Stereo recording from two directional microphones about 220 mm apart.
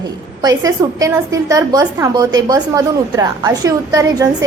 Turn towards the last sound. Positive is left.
turn(degrees=-15)  # may be behind; listen again after turning